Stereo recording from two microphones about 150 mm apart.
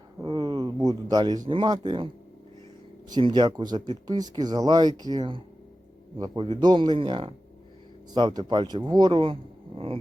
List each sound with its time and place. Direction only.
0.2 s speech: 25° right (ahead or behind)
3.1 s speech: 30° right (ahead or behind)